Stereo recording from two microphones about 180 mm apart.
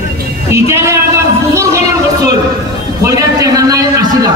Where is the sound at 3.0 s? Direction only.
20° right (ahead or behind).